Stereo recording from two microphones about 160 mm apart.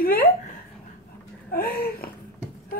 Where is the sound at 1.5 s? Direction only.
70° left (ahead or behind).